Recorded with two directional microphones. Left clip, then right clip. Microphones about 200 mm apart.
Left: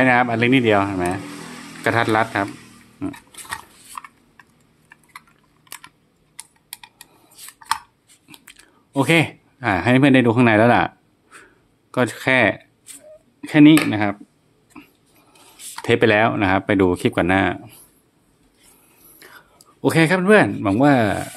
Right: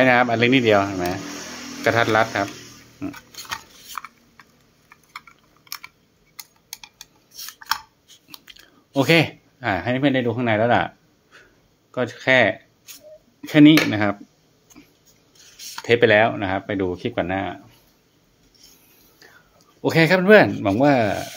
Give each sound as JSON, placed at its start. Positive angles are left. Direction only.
{"t": 0.0, "sound": "speech", "side_deg": 10}
{"t": 3.0, "sound": "pig", "side_deg": 5}
{"t": 8.3, "sound": "chewing", "side_deg": 10}
{"t": 9.9, "sound": "speech", "side_deg": 35}
{"t": 11.3, "sound": "a sound", "side_deg": 20}
{"t": 11.9, "sound": "speech", "side_deg": 25}
{"t": 13.4, "sound": "speech", "side_deg": 0}
{"t": 15.8, "sound": "speech", "side_deg": 30}
{"t": 19.1, "sound": "whispering", "side_deg": 40}
{"t": 20.0, "sound": "speech", "side_deg": 5}
{"t": 20.8, "sound": "rub", "side_deg": 20}